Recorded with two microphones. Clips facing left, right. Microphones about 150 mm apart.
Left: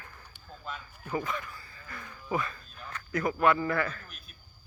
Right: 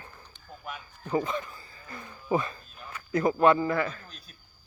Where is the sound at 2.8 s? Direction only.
10° right (ahead or behind).